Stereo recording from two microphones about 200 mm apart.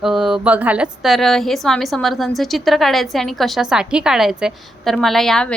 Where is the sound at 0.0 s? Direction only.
Centre (ahead or behind).